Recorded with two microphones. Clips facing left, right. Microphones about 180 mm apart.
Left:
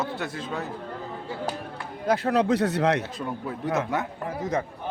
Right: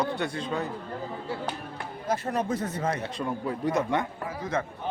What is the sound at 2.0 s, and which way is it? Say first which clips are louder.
Speech: left 6 dB; 70° left (ahead or behind).